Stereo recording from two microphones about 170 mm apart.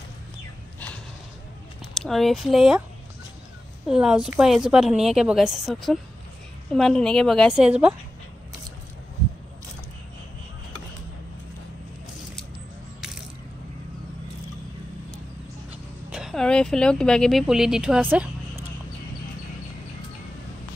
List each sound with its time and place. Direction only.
2.0 s a woman's voice: centre (ahead or behind)
3.8 s a woman's voice: 5° right (ahead or behind)
16.1 s speech: 5° right (ahead or behind)